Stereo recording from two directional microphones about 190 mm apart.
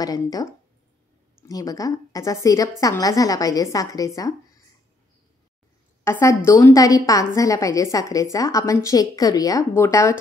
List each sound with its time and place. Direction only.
0.0 s speech: 20° left (ahead or behind)
1.5 s a woman's voice: 20° left (ahead or behind)
6.0 s a woman's voice: 15° left (ahead or behind)